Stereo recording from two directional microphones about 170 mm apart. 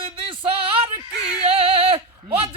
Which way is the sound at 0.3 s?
30° right (ahead or behind).